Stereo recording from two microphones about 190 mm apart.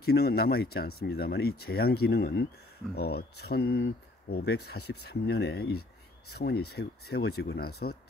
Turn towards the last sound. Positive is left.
turn(degrees=55)  # may be behind; listen again after turning